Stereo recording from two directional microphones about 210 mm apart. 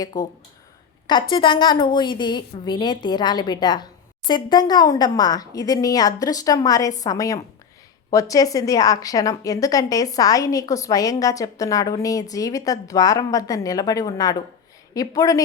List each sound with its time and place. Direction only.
0.1 s a woman's voice: 20° left (ahead or behind)